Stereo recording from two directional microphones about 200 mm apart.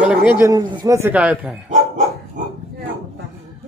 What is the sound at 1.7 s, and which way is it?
Dog, 35° right (ahead or behind).